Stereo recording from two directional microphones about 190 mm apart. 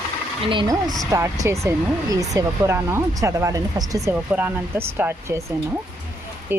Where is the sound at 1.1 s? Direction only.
15° right (ahead or behind).